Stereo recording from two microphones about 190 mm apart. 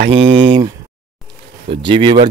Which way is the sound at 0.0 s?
80° right.